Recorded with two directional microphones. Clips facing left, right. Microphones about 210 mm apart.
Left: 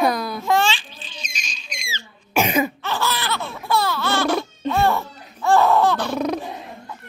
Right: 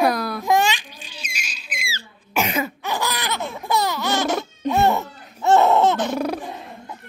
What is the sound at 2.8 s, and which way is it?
Laughter, 15° right (ahead or behind).